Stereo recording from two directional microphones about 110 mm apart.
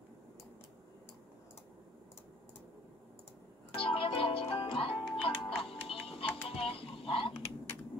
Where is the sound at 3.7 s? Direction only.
55° left (ahead or behind).